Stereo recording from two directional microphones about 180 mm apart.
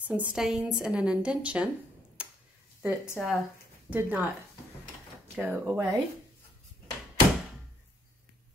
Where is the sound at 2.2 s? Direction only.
5° right (ahead or behind).